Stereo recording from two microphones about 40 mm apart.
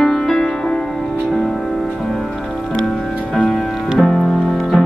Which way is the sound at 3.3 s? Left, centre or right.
Left.